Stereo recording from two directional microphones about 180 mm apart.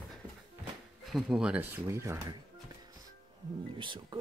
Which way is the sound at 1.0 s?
Centre (ahead or behind).